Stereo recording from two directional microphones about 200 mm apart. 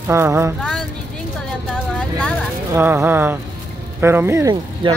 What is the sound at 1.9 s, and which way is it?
Vehicle, 5° left (ahead or behind).